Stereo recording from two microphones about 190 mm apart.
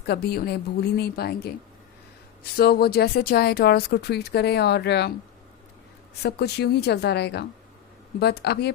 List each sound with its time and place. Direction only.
0.1 s speech: 55° left (ahead or behind)
6.2 s speech: 60° left (ahead or behind)